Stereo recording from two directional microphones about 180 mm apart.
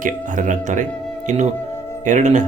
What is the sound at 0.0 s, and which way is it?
Speech, 45° right (ahead or behind).